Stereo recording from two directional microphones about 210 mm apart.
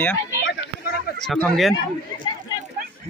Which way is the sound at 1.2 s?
Centre (ahead or behind).